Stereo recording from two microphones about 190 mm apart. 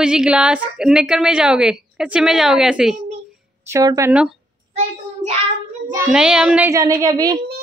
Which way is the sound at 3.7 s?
15° right (ahead or behind).